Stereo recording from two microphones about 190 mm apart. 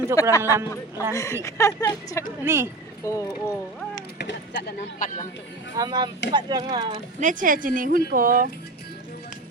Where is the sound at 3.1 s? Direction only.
15° left (ahead or behind).